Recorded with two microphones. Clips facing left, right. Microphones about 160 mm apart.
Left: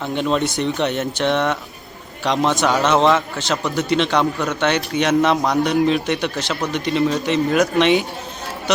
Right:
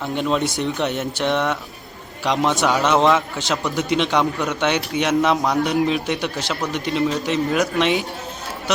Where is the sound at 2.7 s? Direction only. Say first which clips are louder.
Left 1 dB; 5° right (ahead or behind).